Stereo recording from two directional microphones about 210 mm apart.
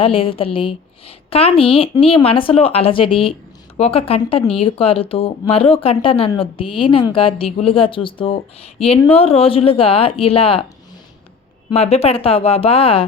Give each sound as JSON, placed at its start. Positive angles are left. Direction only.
{"t": 0.0, "sound": "speech", "side_deg": 25}
{"t": 11.7, "sound": "speech", "side_deg": 30}